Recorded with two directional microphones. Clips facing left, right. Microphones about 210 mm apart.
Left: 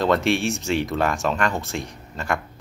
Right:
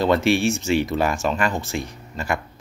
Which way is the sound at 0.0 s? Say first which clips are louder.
Right 2 dB; centre (ahead or behind).